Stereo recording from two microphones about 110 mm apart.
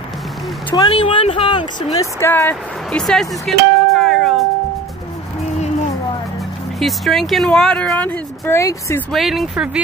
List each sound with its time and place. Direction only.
0.7 s speech: 35° left (ahead or behind)
1.0 s speech: 55° left (ahead or behind); by 3.0 s 20° left (ahead or behind)
3.0 s music: 5° left (ahead or behind)
6.8 s speech: centre (ahead or behind)
8.5 s speech: 25° left (ahead or behind)
9.1 s speech: centre (ahead or behind)